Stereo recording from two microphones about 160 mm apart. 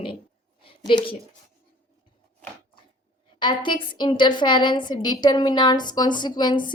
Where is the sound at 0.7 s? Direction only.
30° left (ahead or behind).